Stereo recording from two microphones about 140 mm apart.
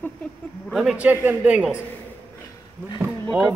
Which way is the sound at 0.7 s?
5° right (ahead or behind).